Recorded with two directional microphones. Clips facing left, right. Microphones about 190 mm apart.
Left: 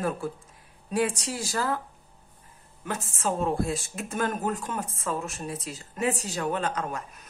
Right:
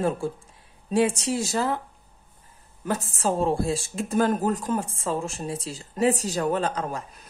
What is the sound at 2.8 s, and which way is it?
A woman's voice, 35° right (ahead or behind).